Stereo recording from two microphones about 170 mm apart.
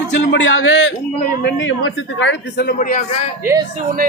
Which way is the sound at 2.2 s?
80° left.